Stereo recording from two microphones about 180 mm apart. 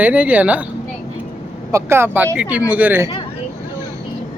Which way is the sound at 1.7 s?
15° right (ahead or behind).